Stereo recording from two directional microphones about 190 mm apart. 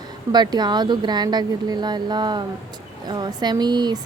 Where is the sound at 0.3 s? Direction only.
20° right (ahead or behind).